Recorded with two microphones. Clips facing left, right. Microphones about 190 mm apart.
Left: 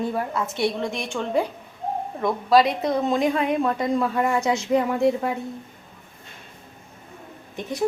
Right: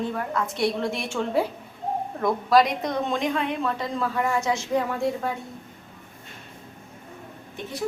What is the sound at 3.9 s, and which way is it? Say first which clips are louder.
Speech: left 3 dB; 25° left (ahead or behind).